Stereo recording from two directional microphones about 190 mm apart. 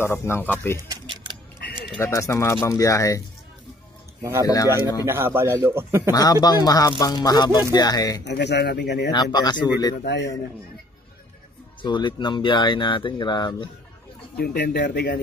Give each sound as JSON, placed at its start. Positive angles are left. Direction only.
{"t": 0.0, "sound": "speech", "side_deg": 15}
{"t": 0.8, "sound": "typing", "side_deg": -25}
{"t": 2.0, "sound": "speech", "side_deg": 15}
{"t": 4.2, "sound": "speech", "side_deg": -15}
{"t": 4.5, "sound": "speech", "side_deg": 15}
{"t": 5.0, "sound": "speech", "side_deg": -10}
{"t": 6.1, "sound": "speech", "side_deg": 20}
{"t": 8.2, "sound": "speech", "side_deg": 65}
{"t": 9.1, "sound": "speech", "side_deg": 20}
{"t": 10.0, "sound": "speech", "side_deg": 65}
{"t": 11.8, "sound": "speech", "side_deg": 25}
{"t": 14.3, "sound": "speech", "side_deg": 55}